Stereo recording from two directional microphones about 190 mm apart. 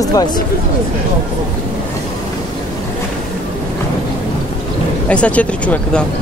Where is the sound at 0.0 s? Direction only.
20° left (ahead or behind).